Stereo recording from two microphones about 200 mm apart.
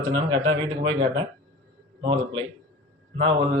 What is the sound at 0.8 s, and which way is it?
A man's voice, 25° right (ahead or behind).